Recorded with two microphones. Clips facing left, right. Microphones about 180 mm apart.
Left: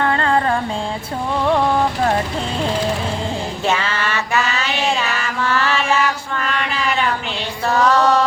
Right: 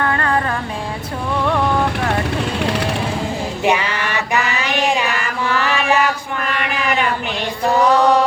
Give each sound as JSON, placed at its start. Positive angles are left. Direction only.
{"t": 0.0, "sound": "music", "side_deg": 25}
{"t": 2.6, "sound": "music", "side_deg": -70}
{"t": 3.7, "sound": "a sound", "side_deg": -15}